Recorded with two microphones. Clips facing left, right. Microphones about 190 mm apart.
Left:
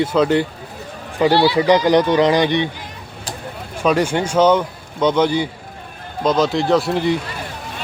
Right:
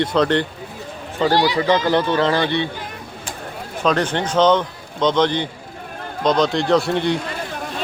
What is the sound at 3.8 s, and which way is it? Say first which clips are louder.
A man's voice: left 2 dB; 10° left (ahead or behind).